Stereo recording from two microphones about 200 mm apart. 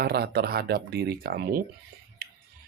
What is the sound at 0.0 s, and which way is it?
Speech, 50° right (ahead or behind).